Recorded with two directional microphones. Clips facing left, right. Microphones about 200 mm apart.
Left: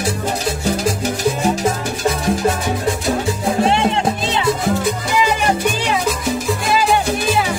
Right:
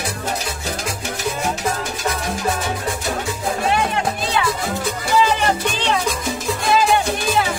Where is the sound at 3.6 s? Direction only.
25° left (ahead or behind).